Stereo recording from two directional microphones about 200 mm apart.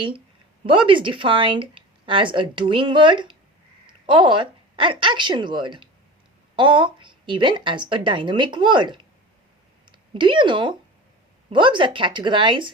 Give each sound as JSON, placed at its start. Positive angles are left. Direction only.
{"t": 0.6, "sound": "speech", "side_deg": -25}